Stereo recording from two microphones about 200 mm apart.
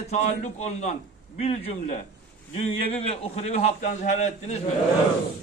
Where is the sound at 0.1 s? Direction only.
35° left (ahead or behind).